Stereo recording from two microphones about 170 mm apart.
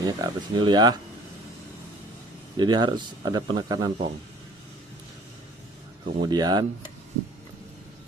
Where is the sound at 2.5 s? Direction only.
25° right (ahead or behind).